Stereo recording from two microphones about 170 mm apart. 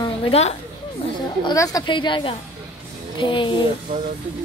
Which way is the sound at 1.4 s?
20° left (ahead or behind).